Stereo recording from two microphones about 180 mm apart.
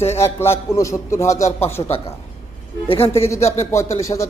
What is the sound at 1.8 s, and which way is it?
Speech, 25° left (ahead or behind).